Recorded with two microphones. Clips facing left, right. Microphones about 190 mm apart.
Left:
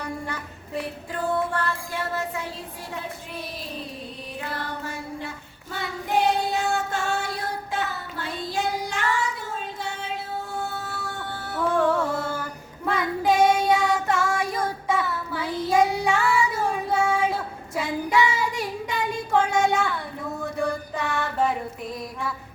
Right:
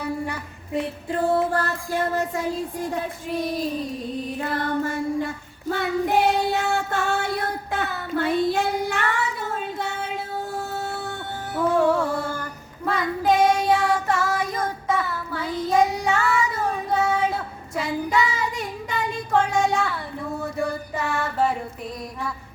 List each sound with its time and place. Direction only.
0.0 s a sound: 10° right (ahead or behind)
1.1 s music: 35° right (ahead or behind)
4.4 s child singing: 45° right (ahead or behind)
11.5 s music: 15° right (ahead or behind)
12.3 s child singing: 5° left (ahead or behind)
17.7 s child singing: 5° left (ahead or behind)
20.6 s music: 5° right (ahead or behind)